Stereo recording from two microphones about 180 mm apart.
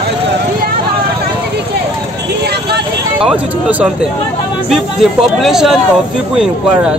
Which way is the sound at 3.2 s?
5° right (ahead or behind).